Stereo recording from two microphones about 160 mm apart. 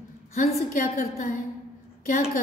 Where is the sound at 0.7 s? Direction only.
55° left (ahead or behind).